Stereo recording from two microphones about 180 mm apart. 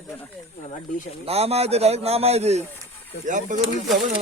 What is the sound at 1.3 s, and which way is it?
A man's voice, 35° right (ahead or behind).